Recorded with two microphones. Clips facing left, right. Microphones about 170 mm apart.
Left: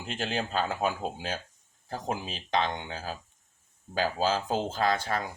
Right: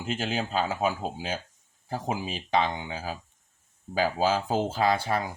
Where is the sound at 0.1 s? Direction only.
5° right (ahead or behind).